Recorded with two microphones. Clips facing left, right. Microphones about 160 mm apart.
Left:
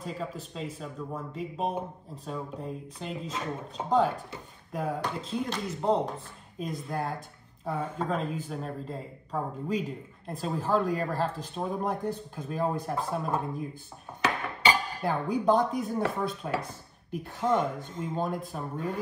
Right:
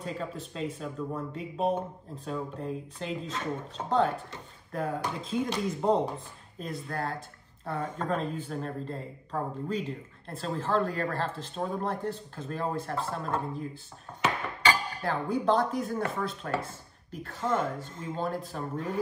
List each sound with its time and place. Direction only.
0.0 s speech: centre (ahead or behind)
6.6 s speech: 15° left (ahead or behind)
14.6 s dishes: 20° left (ahead or behind)
17.2 s speech: 15° left (ahead or behind)